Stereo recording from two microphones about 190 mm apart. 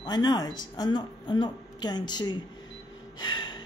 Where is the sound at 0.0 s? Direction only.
20° left (ahead or behind).